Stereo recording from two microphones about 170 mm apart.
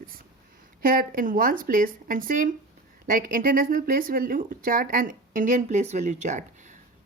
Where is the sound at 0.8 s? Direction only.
55° right (ahead or behind).